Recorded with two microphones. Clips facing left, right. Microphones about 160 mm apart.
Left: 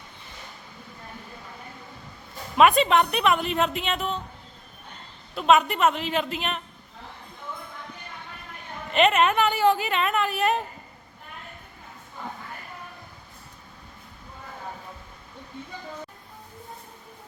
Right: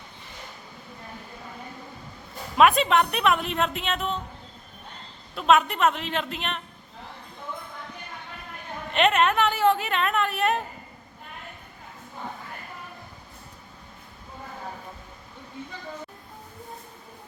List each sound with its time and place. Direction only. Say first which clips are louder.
2.6 s a woman's voice: left 1 dB; centre (ahead or behind)
5.3 s a woman's voice: left 1 dB; centre (ahead or behind)
8.9 s a woman's voice: left 1 dB; centre (ahead or behind)